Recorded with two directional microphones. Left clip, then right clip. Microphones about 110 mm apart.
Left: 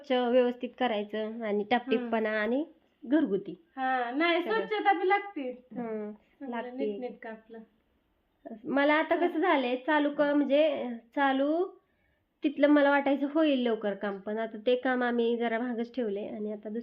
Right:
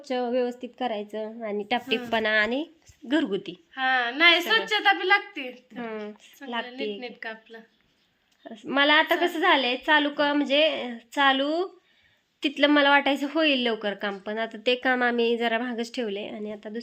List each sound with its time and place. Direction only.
0.0 s a woman's voice: centre (ahead or behind)
3.1 s a woman's voice: 20° right (ahead or behind)
3.8 s a woman's voice: 10° left (ahead or behind)
5.7 s a woman's voice: 25° right (ahead or behind)
7.0 s a woman's voice: 15° left (ahead or behind)
8.4 s a woman's voice: 20° right (ahead or behind)
16.6 s a woman's voice: 10° right (ahead or behind)